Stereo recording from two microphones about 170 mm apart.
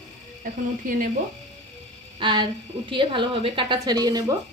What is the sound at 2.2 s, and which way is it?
A woman's voice, 30° right (ahead or behind).